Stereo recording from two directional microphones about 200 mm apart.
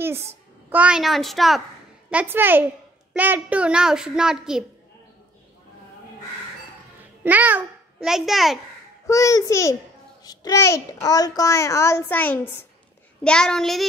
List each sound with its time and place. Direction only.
0.0 s a sound: 10° right (ahead or behind)
0.7 s a woman's voice: 5° right (ahead or behind)
7.2 s a child's voice: 10° right (ahead or behind)
9.0 s a child's voice: 15° left (ahead or behind)